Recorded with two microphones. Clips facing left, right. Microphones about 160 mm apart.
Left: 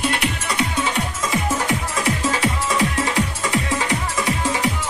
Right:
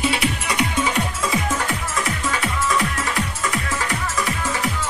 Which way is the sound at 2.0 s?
30° left (ahead or behind).